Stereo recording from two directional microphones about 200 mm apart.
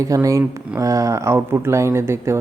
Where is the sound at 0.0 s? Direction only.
15° right (ahead or behind).